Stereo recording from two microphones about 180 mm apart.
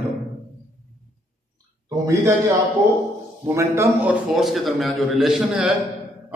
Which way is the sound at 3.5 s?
15° right (ahead or behind).